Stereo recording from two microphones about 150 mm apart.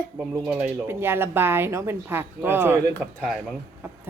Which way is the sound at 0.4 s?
10° right (ahead or behind).